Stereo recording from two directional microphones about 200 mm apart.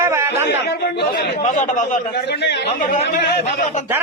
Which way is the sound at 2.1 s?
55° left (ahead or behind).